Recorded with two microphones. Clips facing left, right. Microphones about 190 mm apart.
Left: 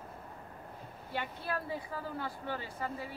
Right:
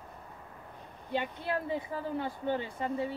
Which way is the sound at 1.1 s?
20° right (ahead or behind).